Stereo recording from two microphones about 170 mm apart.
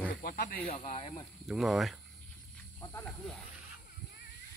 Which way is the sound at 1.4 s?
Centre (ahead or behind).